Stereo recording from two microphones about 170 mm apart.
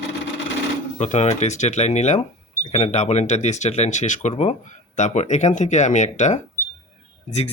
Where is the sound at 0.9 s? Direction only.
40° left (ahead or behind).